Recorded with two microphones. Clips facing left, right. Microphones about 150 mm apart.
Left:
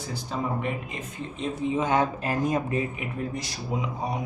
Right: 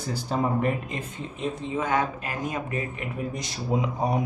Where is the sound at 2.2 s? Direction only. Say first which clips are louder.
Left 5 dB; 35° left (ahead or behind).